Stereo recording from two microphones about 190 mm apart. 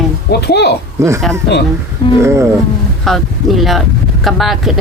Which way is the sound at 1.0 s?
15° right (ahead or behind).